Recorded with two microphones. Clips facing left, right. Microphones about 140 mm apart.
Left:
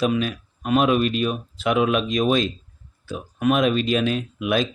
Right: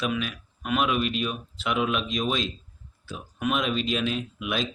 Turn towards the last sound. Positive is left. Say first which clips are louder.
# left 7 dB
turn(degrees=50)  # may be behind; listen again after turning